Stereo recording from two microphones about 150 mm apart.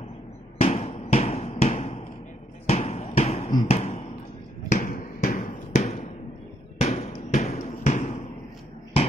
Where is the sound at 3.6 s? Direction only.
45° left (ahead or behind).